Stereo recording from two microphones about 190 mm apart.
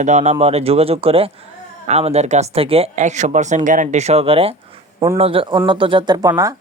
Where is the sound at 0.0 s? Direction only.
35° right (ahead or behind).